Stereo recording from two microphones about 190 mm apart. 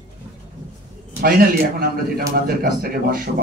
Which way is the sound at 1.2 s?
50° right (ahead or behind).